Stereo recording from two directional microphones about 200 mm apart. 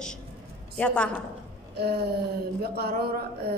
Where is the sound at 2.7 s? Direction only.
50° right (ahead or behind).